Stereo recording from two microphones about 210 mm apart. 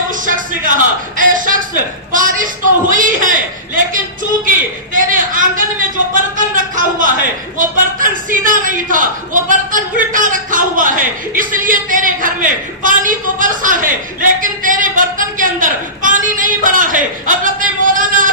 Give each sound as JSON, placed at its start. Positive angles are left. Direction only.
{"t": 0.3, "sound": "a man's voice", "side_deg": -40}